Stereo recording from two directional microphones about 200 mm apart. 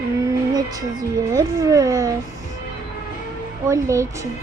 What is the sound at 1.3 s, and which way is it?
Speech, 15° right (ahead or behind).